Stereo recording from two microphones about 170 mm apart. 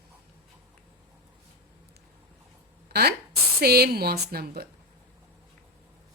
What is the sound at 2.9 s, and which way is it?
Speech, 70° right (ahead or behind).